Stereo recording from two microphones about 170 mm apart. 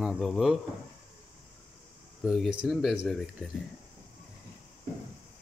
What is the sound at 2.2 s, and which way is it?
Speech, centre (ahead or behind).